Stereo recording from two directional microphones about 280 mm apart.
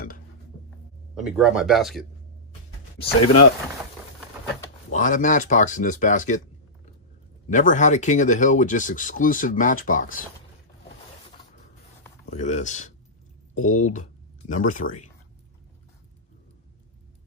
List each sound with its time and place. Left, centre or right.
1.1 s speech: centre
4.8 s speech: left
7.4 s speech: left
12.3 s speech: left